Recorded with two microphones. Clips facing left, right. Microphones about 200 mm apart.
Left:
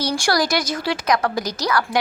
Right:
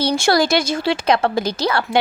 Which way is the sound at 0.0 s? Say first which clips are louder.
Right 4 dB; 25° right (ahead or behind).